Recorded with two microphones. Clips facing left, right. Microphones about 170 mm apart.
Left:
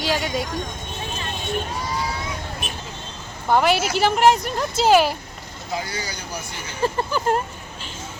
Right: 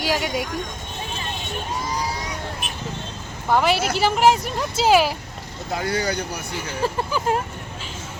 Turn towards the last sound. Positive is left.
turn(degrees=-5)  # may be behind; listen again after turning